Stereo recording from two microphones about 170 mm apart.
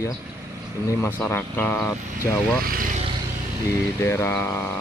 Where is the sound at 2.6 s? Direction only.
55° right (ahead or behind).